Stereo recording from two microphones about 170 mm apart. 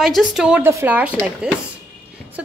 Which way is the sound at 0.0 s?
Centre (ahead or behind).